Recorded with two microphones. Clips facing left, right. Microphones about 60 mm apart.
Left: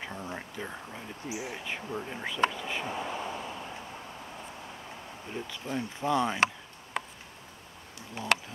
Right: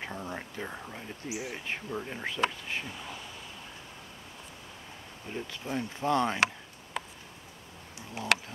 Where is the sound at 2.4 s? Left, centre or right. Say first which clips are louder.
Left 4 dB; left.